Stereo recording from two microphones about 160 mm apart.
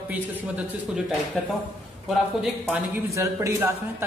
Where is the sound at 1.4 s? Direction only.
Centre (ahead or behind).